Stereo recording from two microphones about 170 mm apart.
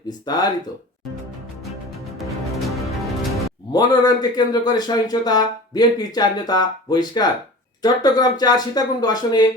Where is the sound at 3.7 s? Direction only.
25° left (ahead or behind).